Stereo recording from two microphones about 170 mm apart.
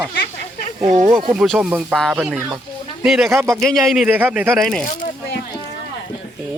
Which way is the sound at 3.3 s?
15° right (ahead or behind).